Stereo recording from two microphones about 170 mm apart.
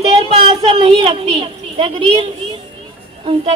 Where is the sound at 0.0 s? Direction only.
35° right (ahead or behind).